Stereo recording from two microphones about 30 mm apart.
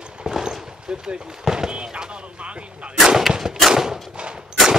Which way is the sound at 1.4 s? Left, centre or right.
Centre.